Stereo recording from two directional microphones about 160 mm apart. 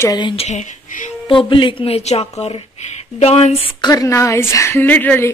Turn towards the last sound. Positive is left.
turn(degrees=10)  # may be behind; listen again after turning